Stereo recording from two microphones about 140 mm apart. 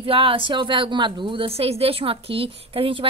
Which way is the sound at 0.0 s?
40° right (ahead or behind).